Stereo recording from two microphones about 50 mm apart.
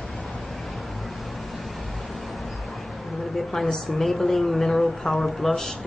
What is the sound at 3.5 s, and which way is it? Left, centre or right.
A woman's voice, centre.